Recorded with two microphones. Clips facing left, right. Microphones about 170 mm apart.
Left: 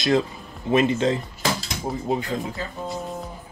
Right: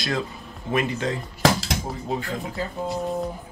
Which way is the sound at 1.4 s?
85° right.